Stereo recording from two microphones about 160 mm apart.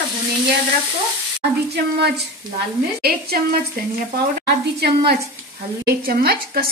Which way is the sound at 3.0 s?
70° right (ahead or behind).